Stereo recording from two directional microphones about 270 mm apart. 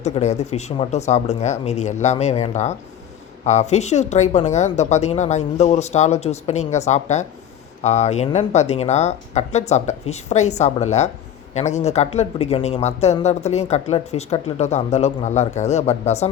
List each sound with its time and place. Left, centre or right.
0.0 s speech: left